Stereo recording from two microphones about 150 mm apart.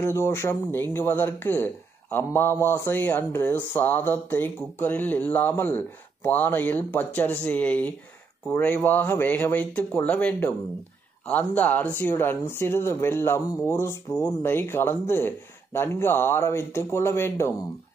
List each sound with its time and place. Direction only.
0.0 s speech: 20° left (ahead or behind)